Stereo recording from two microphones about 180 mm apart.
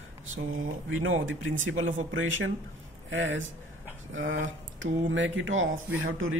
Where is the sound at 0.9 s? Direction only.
90° right.